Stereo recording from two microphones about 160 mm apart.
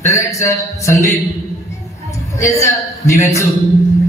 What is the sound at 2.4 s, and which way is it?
Speech, 20° left (ahead or behind).